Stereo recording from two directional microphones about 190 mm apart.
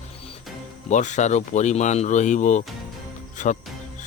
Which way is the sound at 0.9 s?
40° left (ahead or behind).